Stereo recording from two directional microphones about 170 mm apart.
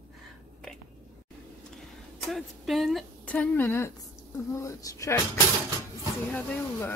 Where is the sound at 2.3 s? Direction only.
Centre (ahead or behind); by 5.2 s 20° left (ahead or behind).